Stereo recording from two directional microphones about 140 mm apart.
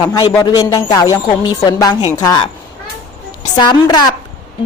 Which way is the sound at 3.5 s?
30° left (ahead or behind).